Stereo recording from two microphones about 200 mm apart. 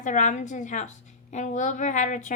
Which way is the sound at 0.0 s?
40° left (ahead or behind).